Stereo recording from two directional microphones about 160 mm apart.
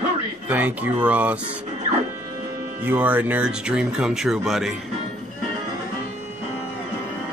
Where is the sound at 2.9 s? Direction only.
10° right (ahead or behind).